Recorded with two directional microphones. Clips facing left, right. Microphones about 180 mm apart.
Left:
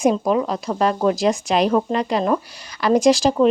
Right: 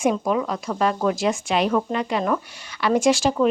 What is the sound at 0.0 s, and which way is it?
Speech, 35° left (ahead or behind).